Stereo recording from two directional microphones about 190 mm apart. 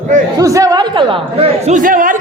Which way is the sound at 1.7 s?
45° right (ahead or behind).